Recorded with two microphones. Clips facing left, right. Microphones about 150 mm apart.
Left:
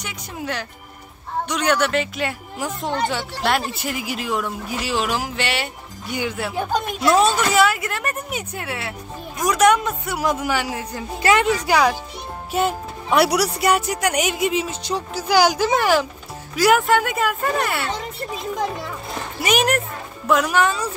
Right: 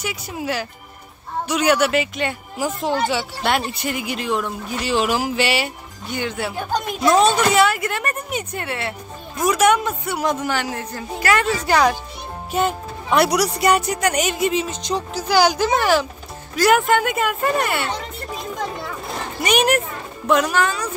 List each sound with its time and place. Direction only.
0.0 s speech: 5° right (ahead or behind)
6.0 s speech: 10° left (ahead or behind)
19.4 s speech: centre (ahead or behind)
20.5 s a woman's voice: 25° left (ahead or behind)